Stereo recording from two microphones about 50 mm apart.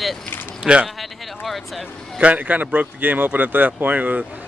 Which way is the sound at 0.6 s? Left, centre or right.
Right.